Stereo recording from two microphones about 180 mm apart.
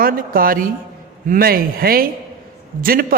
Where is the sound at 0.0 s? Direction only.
50° right (ahead or behind).